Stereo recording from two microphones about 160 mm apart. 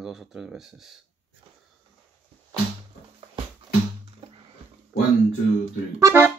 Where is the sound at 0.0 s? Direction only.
5° right (ahead or behind).